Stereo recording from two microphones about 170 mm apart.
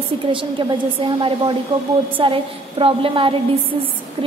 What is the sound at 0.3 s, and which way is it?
A woman's voice, 30° right (ahead or behind).